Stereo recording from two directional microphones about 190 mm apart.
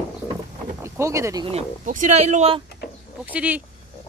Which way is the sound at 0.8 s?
15° right (ahead or behind).